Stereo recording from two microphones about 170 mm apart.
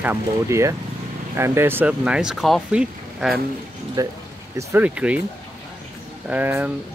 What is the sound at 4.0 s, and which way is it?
Speech, 20° right (ahead or behind).